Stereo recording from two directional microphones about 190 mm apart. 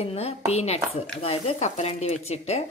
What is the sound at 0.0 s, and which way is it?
A woman's voice, 35° left (ahead or behind).